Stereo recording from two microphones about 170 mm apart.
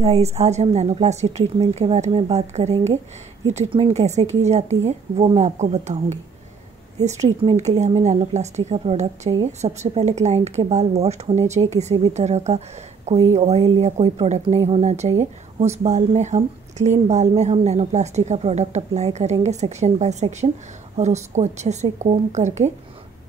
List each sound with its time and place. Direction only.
0.0 s speech: 35° right (ahead or behind)